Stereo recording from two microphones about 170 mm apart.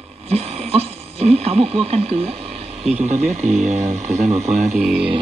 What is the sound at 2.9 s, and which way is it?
Speech, 40° right (ahead or behind).